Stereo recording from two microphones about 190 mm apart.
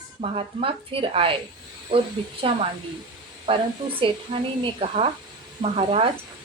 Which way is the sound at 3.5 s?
25° right (ahead or behind).